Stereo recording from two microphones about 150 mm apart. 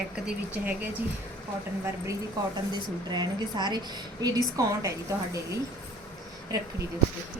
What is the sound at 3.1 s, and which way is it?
Speech, 30° right (ahead or behind).